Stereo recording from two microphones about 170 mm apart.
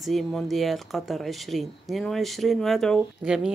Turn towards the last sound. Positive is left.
turn(degrees=-5)  # may be behind; listen again after turning